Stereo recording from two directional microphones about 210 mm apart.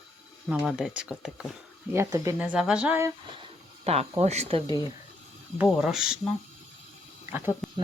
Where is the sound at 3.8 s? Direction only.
30° right (ahead or behind).